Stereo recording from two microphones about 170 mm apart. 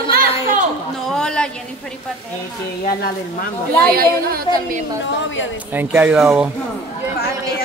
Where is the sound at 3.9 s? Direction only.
60° right (ahead or behind).